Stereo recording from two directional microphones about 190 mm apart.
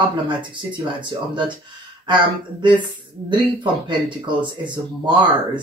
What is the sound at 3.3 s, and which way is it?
Speech, 25° right (ahead or behind).